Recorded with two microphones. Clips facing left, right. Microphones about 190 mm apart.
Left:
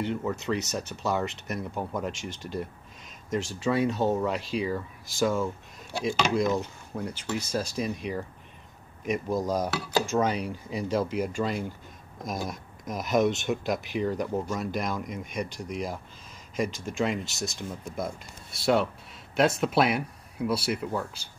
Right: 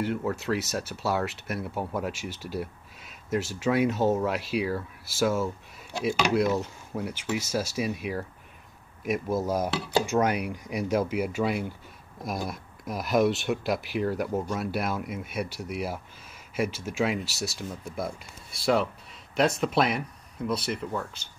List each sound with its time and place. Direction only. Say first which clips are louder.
0.0 s speech: right 1 dB; 5° right (ahead or behind)
6.0 s speech: right 1 dB; 10° right (ahead or behind)
9.7 s speech: right 1 dB; 25° right (ahead or behind)
10.0 s speech: right 1 dB; 10° right (ahead or behind); by 21.1 s 5° left (ahead or behind)